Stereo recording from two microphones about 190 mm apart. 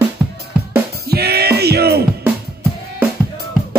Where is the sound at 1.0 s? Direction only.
55° right (ahead or behind).